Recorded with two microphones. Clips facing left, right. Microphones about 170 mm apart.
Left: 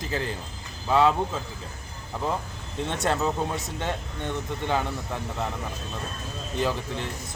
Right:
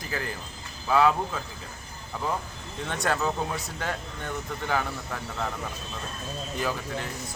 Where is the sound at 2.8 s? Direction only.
25° left (ahead or behind).